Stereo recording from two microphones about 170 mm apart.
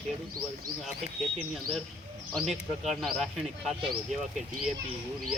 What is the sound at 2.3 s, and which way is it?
Speech, centre (ahead or behind).